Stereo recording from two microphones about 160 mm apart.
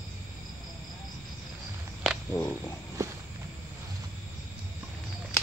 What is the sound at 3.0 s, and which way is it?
Walk, 20° right (ahead or behind).